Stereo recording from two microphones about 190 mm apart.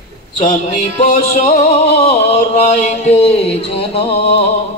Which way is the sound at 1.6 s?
35° left (ahead or behind).